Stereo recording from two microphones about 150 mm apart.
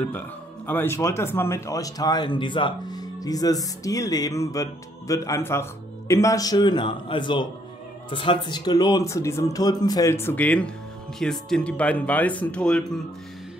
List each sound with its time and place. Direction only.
0.7 s speech: 15° left (ahead or behind)